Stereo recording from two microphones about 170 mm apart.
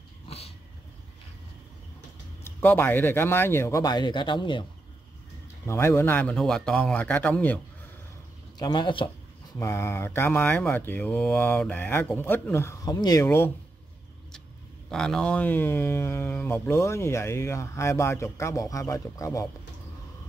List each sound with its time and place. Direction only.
0.3 s vehicle: 35° left (ahead or behind)
2.4 s speech: 10° left (ahead or behind); by 4.6 s 30° left (ahead or behind)
5.7 s speech: 15° left (ahead or behind)
8.5 s speech: 25° left (ahead or behind)
9.6 s speech: 15° left (ahead or behind)
14.9 s speech: 5° left (ahead or behind)